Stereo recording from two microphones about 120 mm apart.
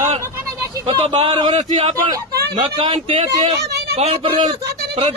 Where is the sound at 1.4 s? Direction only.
45° right (ahead or behind).